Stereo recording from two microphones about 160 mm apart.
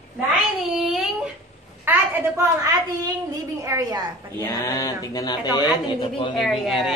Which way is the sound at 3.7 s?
20° right (ahead or behind).